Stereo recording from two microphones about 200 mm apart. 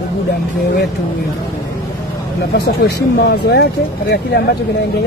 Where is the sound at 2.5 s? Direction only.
55° left (ahead or behind).